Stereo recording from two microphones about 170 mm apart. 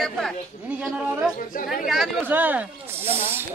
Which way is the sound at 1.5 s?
55° left (ahead or behind).